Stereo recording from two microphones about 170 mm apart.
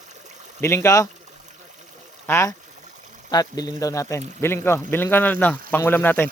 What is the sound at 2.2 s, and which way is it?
Speech, 15° left (ahead or behind).